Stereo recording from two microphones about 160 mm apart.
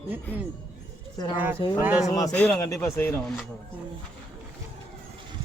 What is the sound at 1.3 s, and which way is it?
Speech, 10° right (ahead or behind).